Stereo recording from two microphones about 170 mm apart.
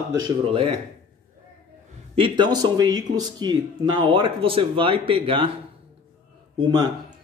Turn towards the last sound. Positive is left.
turn(degrees=-25)  # may be behind; listen again after turning